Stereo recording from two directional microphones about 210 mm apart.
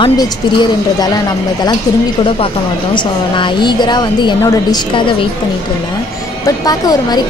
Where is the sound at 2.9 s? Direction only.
20° left (ahead or behind).